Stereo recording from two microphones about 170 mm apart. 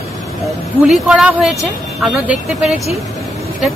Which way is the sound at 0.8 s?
Centre (ahead or behind).